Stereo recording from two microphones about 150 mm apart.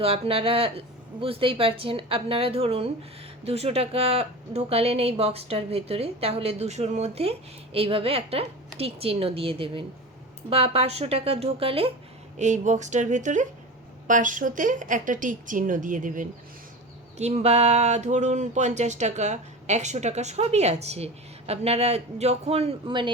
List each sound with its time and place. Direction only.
0.0 s speech: 40° right (ahead or behind)
12.4 s a woman's voice: 50° right (ahead or behind)
17.2 s speech: 45° right (ahead or behind); by 23.1 s 30° right (ahead or behind)